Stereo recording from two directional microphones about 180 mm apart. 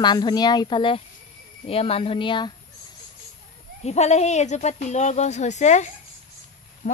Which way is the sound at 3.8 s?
40° left (ahead or behind).